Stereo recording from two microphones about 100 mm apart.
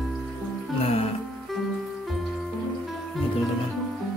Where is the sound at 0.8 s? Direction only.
90° left.